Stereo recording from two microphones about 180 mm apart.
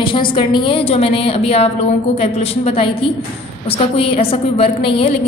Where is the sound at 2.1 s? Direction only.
35° left (ahead or behind).